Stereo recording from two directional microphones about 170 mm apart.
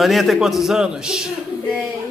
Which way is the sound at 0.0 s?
Centre (ahead or behind).